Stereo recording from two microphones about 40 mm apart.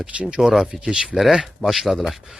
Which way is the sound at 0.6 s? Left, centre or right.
Centre.